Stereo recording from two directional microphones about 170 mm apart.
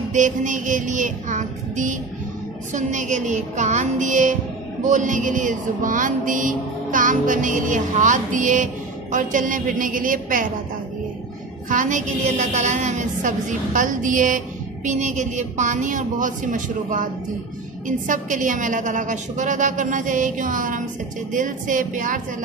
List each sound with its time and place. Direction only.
0.1 s music: 50° right (ahead or behind)
11.7 s music: 50° right (ahead or behind)